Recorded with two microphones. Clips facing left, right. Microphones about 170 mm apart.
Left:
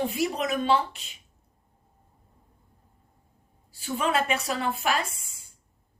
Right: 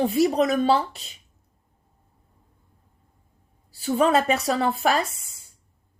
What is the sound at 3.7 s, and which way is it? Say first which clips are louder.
A woman's voice: right 7 dB; 35° right (ahead or behind).